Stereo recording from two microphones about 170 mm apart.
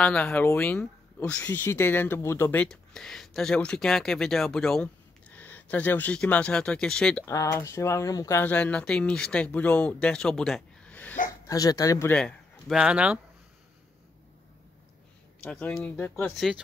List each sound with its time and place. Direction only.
0.0 s speech: 10° left (ahead or behind)
7.2 s speech: 15° left (ahead or behind)
11.2 s speech: 20° left (ahead or behind)
12.1 s speech: 5° left (ahead or behind)
15.4 s speech: 5° left (ahead or behind)